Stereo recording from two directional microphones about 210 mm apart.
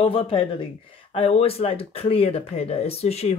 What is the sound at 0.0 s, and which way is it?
Speech, 25° left (ahead or behind).